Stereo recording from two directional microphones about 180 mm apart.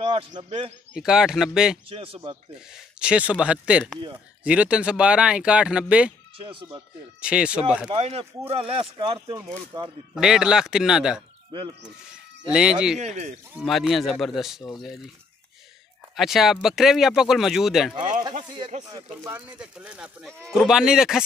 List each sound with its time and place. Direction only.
0.0 s a man's voice: 35° right (ahead or behind)
0.9 s speech: 5° right (ahead or behind)
1.9 s speech: 30° right (ahead or behind)
2.7 s speech: 5° right (ahead or behind)
6.4 s speech: 30° right (ahead or behind)
7.2 s speech: 5° right (ahead or behind)
7.9 s speech: 35° right (ahead or behind)
10.1 s speech: 5° right (ahead or behind)
12.4 s speech: 5° right (ahead or behind)
13.0 s speech: 40° right (ahead or behind)
13.6 s speech: centre (ahead or behind)
16.2 s speech: centre (ahead or behind)
17.9 s speech: 45° right (ahead or behind)
19.2 s speech: 10° right (ahead or behind)